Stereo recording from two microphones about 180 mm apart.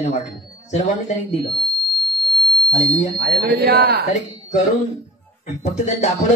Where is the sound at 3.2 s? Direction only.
65° right (ahead or behind).